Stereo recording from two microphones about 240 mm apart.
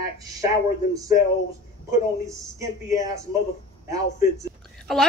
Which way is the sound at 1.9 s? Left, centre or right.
Centre.